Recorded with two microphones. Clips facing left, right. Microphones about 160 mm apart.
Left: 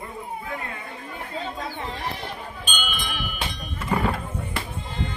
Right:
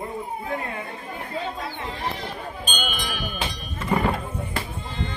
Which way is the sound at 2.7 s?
40° right (ahead or behind).